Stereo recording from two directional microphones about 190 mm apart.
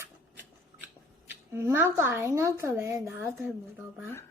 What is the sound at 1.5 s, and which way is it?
A woman's voice, 15° right (ahead or behind).